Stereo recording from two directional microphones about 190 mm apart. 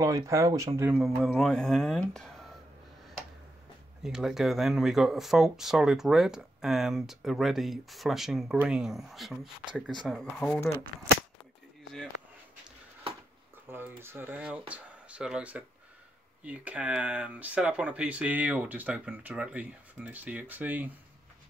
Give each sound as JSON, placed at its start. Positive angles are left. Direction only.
{"t": 0.0, "sound": "speech", "side_deg": -15}
{"t": 0.9, "sound": "speech", "side_deg": 0}
{"t": 4.0, "sound": "speech", "side_deg": -5}
{"t": 13.7, "sound": "speech", "side_deg": -10}